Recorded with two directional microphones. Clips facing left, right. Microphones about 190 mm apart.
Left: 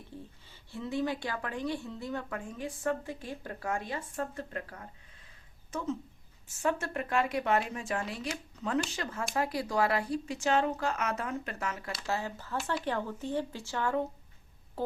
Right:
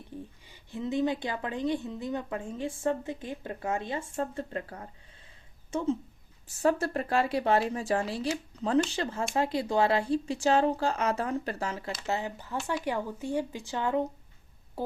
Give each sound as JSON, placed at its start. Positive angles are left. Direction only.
{"t": 0.2, "sound": "a woman's voice", "side_deg": -15}